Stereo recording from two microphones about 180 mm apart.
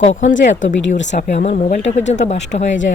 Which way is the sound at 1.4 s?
40° left (ahead or behind).